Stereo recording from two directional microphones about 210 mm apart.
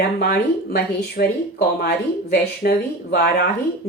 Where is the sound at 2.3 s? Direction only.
45° left (ahead or behind).